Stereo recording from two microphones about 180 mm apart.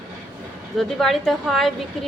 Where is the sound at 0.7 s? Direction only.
Centre (ahead or behind).